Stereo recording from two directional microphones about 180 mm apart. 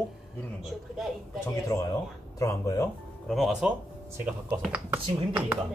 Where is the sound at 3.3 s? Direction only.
Centre (ahead or behind).